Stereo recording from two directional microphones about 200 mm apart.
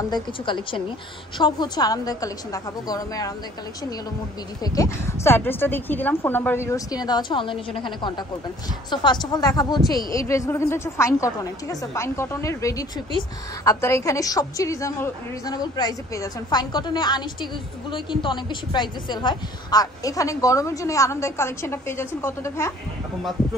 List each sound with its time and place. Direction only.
0.1 s a woman's voice: 25° left (ahead or behind)
4.6 s a woman's voice: 15° left (ahead or behind)